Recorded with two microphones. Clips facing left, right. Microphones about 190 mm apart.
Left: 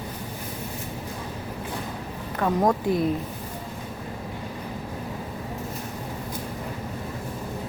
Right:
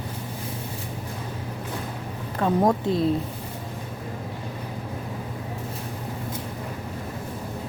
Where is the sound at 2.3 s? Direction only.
25° right (ahead or behind).